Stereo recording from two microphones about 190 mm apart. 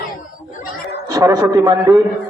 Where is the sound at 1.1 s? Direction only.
15° right (ahead or behind).